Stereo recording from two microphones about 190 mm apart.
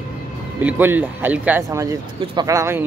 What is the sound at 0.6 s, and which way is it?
Speech, 10° right (ahead or behind).